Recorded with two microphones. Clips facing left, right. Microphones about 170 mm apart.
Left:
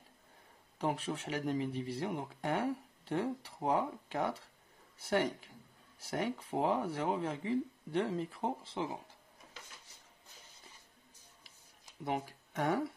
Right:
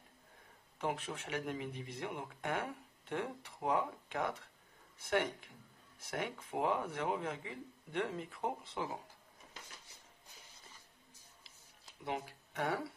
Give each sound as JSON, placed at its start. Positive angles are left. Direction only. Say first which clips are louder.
{"t": 0.7, "sound": "speech", "louder": "left 3 dB", "side_deg": 35}
{"t": 12.0, "sound": "speech", "louder": "left 4 dB", "side_deg": 45}